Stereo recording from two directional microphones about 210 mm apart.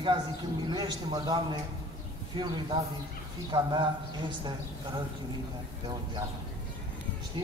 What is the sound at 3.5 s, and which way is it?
Speech, 20° right (ahead or behind).